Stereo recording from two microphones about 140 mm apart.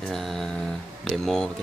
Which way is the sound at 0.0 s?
Centre (ahead or behind).